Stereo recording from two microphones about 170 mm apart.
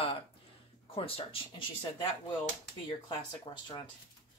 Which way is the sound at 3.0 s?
25° left (ahead or behind).